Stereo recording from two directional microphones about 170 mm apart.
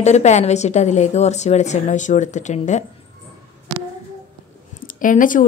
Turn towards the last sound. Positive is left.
turn(degrees=50)  # may be behind; listen again after turning